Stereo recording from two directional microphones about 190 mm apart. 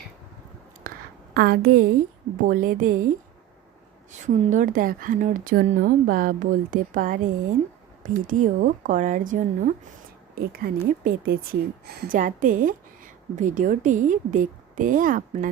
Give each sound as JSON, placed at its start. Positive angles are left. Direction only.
{"t": 0.9, "sound": "a sound", "side_deg": -55}
{"t": 2.5, "sound": "a woman's voice", "side_deg": -45}
{"t": 4.1, "sound": "a woman's voice", "side_deg": -40}
{"t": 10.3, "sound": "a woman's voice", "side_deg": -50}